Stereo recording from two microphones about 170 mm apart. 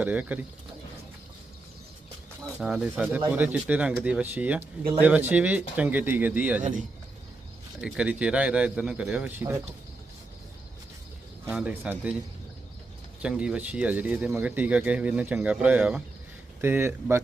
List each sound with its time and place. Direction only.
0.0 s speech: 10° right (ahead or behind)
2.6 s speech: 5° right (ahead or behind)
6.6 s speech: 50° right (ahead or behind)
7.8 s speech: 5° right (ahead or behind)
11.4 s speech: 10° right (ahead or behind)
13.2 s speech: 5° right (ahead or behind)